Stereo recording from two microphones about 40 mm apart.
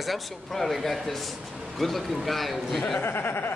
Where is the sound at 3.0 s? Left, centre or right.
Left.